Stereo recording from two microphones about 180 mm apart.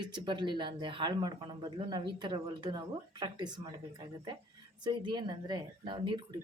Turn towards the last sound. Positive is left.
turn(degrees=-25)  # may be behind; listen again after turning